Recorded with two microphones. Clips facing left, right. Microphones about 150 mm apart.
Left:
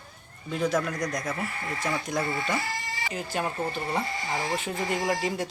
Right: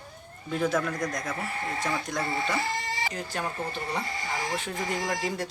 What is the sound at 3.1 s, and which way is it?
Speech, 10° left (ahead or behind).